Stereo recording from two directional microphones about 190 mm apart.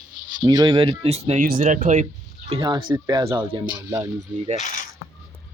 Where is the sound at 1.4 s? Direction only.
45° right (ahead or behind).